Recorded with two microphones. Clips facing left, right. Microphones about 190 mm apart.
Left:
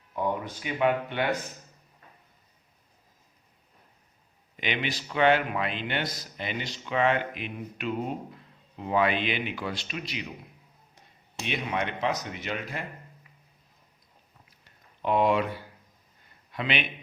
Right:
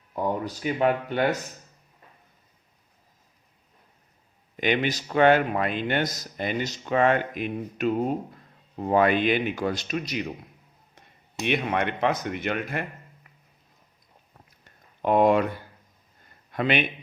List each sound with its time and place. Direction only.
0.2 s speech: 40° right (ahead or behind)
4.5 s speech: 45° right (ahead or behind)
11.4 s speech: 55° right (ahead or behind)
14.6 s a sound: 45° right (ahead or behind)
16.5 s speech: 50° right (ahead or behind)